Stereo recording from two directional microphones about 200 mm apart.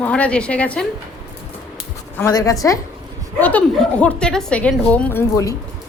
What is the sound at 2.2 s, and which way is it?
A woman's voice, 20° left (ahead or behind).